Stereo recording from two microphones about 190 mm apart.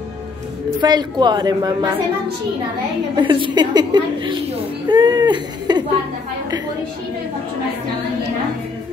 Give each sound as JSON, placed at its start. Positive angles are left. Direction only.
{"t": 0.7, "sound": "a woman's voice", "side_deg": -20}
{"t": 3.2, "sound": "a woman's voice", "side_deg": -25}